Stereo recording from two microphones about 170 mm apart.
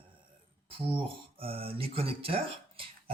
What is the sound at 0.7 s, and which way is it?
Speech, 30° right (ahead or behind).